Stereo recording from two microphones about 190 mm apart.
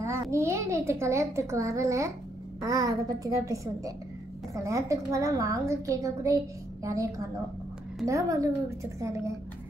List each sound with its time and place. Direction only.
0.0 s a child's voice: 15° right (ahead or behind)
8.1 s a child's voice: 15° right (ahead or behind)